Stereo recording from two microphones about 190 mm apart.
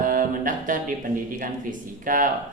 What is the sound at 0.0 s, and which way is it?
Music, 45° right (ahead or behind).